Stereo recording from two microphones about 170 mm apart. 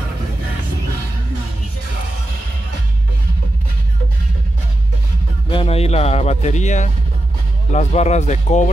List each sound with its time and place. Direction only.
5.5 s a man's voice: 35° left (ahead or behind)